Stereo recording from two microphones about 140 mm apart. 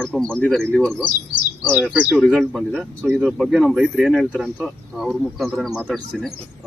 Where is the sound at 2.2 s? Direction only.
5° left (ahead or behind).